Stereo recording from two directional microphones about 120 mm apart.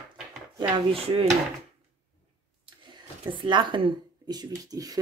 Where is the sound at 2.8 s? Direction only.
45° right (ahead or behind).